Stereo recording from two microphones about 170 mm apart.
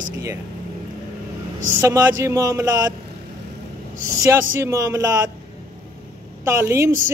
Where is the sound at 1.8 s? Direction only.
20° right (ahead or behind).